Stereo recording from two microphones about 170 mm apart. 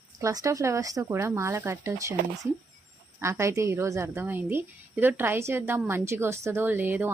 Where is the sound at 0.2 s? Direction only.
20° right (ahead or behind).